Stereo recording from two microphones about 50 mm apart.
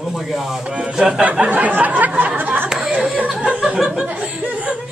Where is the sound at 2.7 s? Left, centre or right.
Centre.